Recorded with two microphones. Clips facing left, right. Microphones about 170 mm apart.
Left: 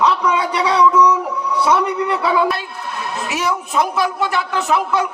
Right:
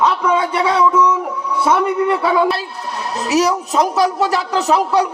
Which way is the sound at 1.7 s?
45° right (ahead or behind).